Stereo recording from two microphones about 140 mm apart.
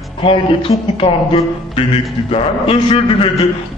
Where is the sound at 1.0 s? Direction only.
40° left (ahead or behind).